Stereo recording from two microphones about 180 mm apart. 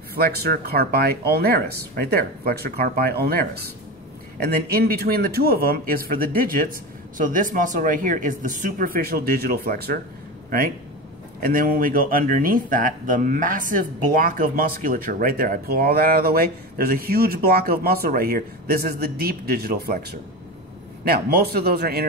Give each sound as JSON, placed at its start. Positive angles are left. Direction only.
{"t": 0.1, "sound": "speech", "side_deg": -55}
{"t": 11.4, "sound": "speech", "side_deg": -55}